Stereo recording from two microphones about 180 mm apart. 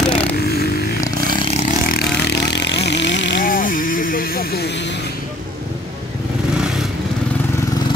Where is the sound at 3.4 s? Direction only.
50° left (ahead or behind).